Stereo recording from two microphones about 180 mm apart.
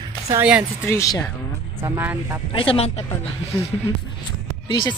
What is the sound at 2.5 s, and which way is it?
Speech, 30° left (ahead or behind).